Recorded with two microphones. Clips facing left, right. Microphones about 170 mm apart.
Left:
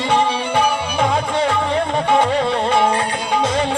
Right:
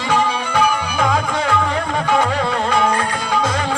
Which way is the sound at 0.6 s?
30° left (ahead or behind).